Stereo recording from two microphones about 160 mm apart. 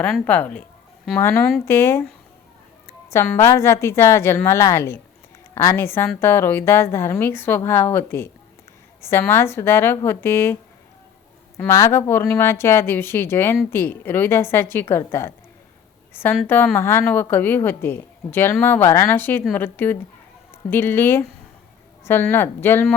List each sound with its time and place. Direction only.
0.0 s a woman's voice: 10° left (ahead or behind)